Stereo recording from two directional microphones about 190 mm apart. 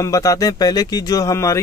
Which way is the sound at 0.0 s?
15° left (ahead or behind).